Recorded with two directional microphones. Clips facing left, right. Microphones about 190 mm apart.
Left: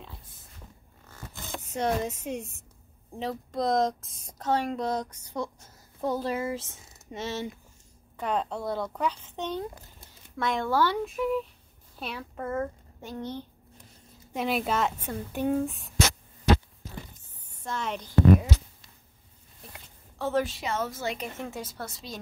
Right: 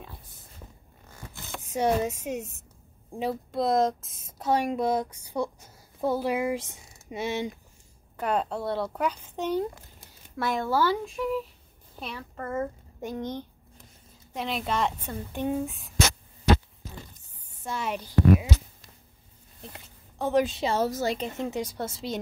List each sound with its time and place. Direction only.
1.7 s speech: 10° right (ahead or behind)
12.5 s a child's voice: 10° right (ahead or behind)
14.3 s speech: 5° left (ahead or behind)
15.4 s speech: 5° right (ahead or behind)
17.6 s speech: 10° right (ahead or behind)
19.7 s a sound: 15° right (ahead or behind)
20.6 s a woman's voice: 35° right (ahead or behind)
21.4 s a woman's voice: 15° right (ahead or behind)